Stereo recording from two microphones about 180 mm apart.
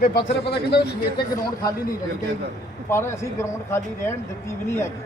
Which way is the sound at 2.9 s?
15° left (ahead or behind).